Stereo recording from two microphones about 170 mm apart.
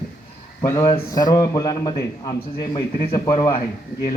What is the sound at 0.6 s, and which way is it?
A man's voice, 20° left (ahead or behind).